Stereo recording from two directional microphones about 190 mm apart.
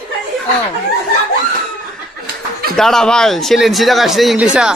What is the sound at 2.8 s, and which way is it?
Speech, centre (ahead or behind).